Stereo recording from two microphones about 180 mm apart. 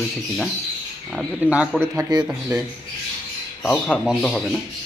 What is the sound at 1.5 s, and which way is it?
Speech, 5° right (ahead or behind).